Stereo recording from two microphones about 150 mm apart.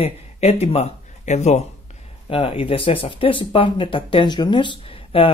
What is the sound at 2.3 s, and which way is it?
Speech, 40° left (ahead or behind).